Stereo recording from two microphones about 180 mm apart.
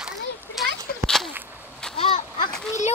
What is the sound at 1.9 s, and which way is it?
Splash, 30° left (ahead or behind).